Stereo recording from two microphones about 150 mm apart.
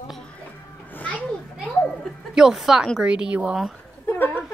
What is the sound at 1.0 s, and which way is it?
Children playing, 10° left (ahead or behind).